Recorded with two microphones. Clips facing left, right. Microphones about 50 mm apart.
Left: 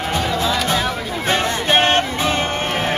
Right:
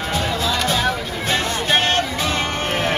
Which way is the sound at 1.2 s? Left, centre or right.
Left.